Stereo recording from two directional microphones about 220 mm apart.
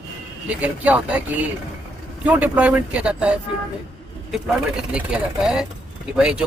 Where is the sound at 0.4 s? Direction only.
5° right (ahead or behind).